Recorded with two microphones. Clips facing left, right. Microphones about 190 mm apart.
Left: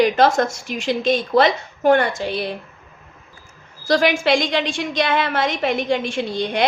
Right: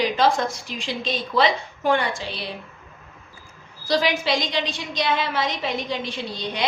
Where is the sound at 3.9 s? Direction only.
55° left (ahead or behind).